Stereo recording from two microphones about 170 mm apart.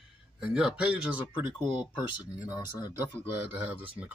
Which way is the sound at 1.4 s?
30° left (ahead or behind).